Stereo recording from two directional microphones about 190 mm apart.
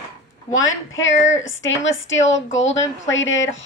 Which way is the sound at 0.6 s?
90° left.